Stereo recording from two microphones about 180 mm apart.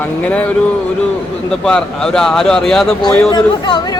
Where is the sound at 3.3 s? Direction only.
25° left (ahead or behind).